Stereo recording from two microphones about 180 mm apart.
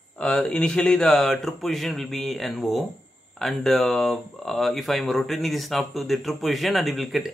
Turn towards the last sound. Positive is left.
turn(degrees=0)  # may be behind; listen again after turning